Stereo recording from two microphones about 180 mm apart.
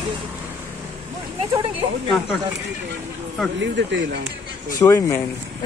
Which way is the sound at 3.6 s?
80° right.